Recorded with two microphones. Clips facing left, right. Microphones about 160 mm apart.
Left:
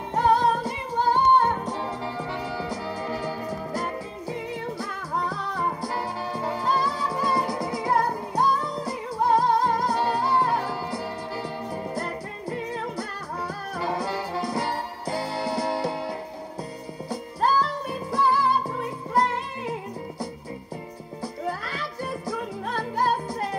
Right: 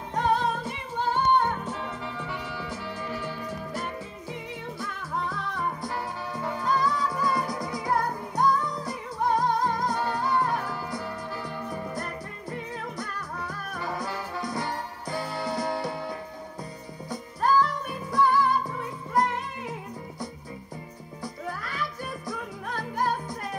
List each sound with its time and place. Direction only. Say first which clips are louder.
0.1 s music: left 4 dB; 35° left (ahead or behind)
21.5 s music: left 2 dB; 30° left (ahead or behind)